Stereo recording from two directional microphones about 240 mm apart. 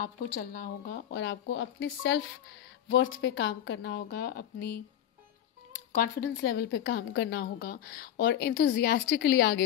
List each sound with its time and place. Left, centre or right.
0.0 s a woman's voice: left
6.4 s a woman's voice: left